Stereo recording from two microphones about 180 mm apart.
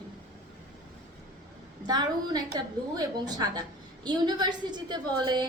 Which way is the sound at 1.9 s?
20° right (ahead or behind).